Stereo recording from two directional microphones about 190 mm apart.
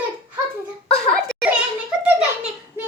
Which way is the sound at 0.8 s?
5° left (ahead or behind).